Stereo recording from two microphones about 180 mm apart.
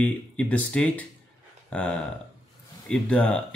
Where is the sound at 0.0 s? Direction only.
5° left (ahead or behind).